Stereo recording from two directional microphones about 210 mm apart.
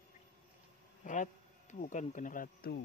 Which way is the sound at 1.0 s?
35° left (ahead or behind).